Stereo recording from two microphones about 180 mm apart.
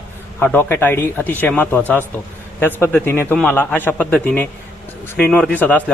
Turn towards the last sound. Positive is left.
turn(degrees=10)  # may be behind; listen again after turning